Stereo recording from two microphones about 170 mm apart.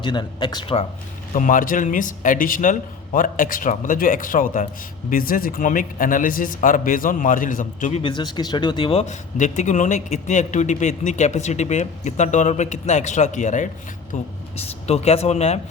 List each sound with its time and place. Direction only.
0.0 s speech: 25° left (ahead or behind)
1.4 s speech: 50° left (ahead or behind)
8.0 s speech: 25° left (ahead or behind)